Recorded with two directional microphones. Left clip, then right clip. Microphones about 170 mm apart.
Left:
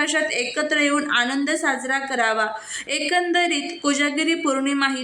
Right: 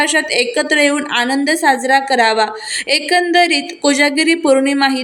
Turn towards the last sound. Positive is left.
turn(degrees=-25)  # may be behind; listen again after turning